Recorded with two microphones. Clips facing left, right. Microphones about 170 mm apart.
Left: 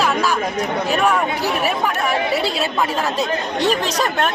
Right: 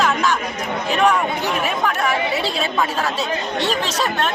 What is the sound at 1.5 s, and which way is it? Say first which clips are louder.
Speech: left 1 dB; 5° left (ahead or behind).